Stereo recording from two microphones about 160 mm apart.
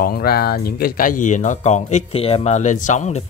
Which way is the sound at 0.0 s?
70° left (ahead or behind).